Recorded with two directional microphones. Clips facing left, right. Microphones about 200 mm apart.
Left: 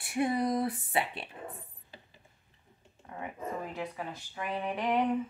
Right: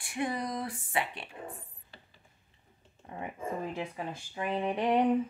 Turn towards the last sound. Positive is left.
turn(degrees=-30)  # may be behind; listen again after turning